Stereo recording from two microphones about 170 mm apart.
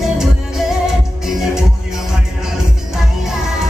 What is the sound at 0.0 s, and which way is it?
Music, centre (ahead or behind).